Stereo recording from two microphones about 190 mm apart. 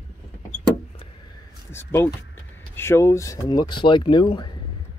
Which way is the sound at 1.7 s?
10° left (ahead or behind).